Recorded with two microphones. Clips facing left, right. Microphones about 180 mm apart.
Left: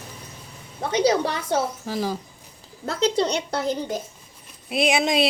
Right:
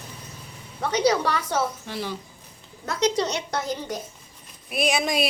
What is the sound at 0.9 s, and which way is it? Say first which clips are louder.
Speech: left 1 dB; 30° left (ahead or behind).